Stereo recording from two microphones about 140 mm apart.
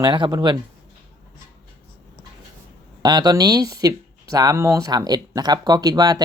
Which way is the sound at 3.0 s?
30° right (ahead or behind).